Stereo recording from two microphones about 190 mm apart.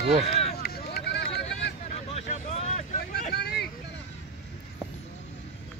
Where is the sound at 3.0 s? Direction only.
60° left (ahead or behind).